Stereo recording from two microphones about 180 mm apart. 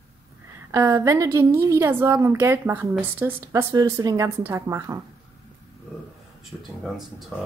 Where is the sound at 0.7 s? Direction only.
15° right (ahead or behind).